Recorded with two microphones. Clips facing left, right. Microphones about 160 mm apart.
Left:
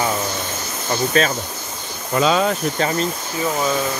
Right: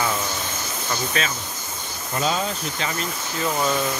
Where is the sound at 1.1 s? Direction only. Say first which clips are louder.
Left 10 dB; 40° left (ahead or behind).